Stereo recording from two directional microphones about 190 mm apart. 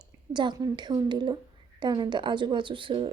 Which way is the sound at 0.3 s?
25° right (ahead or behind).